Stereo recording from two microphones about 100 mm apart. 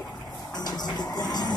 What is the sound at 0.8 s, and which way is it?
Music, 45° left (ahead or behind).